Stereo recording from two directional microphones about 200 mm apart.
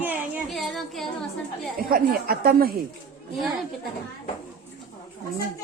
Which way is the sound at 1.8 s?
45° right (ahead or behind).